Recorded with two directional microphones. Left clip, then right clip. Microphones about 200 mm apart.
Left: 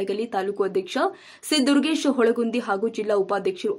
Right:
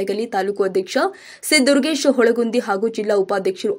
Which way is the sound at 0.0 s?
15° right (ahead or behind).